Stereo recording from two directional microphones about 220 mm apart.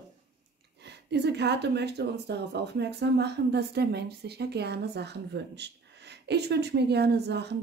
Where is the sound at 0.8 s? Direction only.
50° right (ahead or behind).